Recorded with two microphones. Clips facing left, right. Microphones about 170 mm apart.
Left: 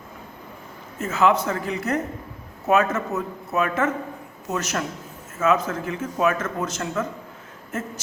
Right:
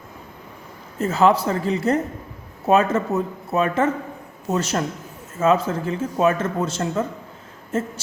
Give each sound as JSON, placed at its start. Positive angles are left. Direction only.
{"t": 0.9, "sound": "a man's voice", "side_deg": -35}